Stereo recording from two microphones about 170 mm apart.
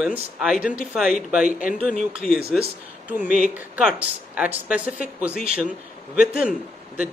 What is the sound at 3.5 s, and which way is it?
Speech, 10° right (ahead or behind).